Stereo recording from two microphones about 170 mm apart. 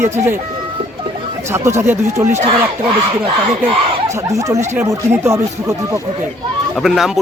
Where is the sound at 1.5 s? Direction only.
15° right (ahead or behind).